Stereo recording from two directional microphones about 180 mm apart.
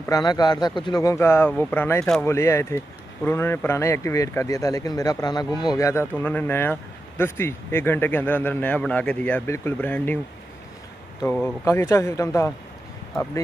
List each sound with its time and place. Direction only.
0.1 s speech: 20° left (ahead or behind)
11.2 s speech: 10° left (ahead or behind)